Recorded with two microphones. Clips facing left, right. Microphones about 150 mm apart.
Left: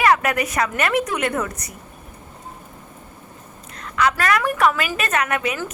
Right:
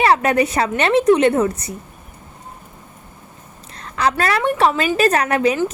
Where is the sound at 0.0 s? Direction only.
30° right (ahead or behind).